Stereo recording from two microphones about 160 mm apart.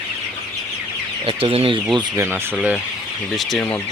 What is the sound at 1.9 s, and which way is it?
Speech, 15° right (ahead or behind).